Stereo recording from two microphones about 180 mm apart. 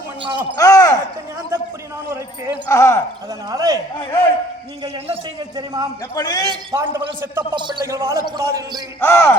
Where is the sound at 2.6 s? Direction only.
15° left (ahead or behind).